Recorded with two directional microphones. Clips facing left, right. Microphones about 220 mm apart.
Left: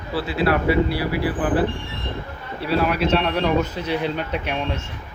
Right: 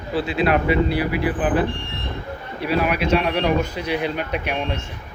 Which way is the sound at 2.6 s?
15° right (ahead or behind).